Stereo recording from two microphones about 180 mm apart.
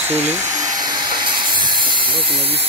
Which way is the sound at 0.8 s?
25° right (ahead or behind).